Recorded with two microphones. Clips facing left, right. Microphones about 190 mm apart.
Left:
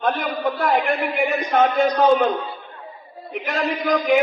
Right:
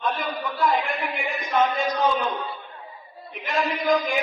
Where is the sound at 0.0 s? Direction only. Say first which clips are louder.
Left 6 dB; 60° left (ahead or behind).